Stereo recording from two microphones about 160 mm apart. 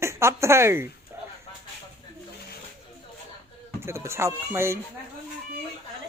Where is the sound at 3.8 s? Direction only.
15° right (ahead or behind).